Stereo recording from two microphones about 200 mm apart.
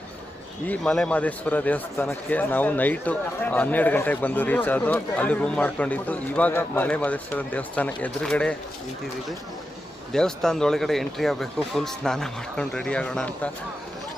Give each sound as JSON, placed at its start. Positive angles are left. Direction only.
{"t": 0.7, "sound": "speech", "side_deg": 5}
{"t": 10.1, "sound": "speech", "side_deg": 0}